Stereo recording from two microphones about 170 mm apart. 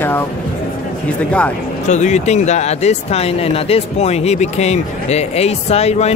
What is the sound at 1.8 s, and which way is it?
Speech, 45° left (ahead or behind).